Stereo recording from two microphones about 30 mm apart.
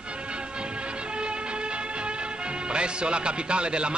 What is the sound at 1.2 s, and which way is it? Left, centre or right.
Vehicle, right.